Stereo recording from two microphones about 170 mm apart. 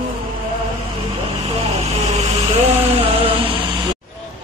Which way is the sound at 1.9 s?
40° right (ahead or behind).